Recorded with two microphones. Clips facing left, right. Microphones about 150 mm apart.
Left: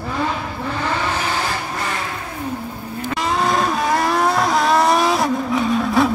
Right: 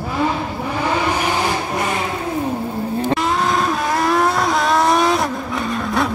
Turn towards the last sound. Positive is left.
turn(degrees=0)  # may be behind; listen again after turning